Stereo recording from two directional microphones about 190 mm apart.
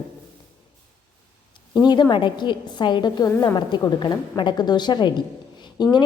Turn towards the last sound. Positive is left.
turn(degrees=20)  # may be behind; listen again after turning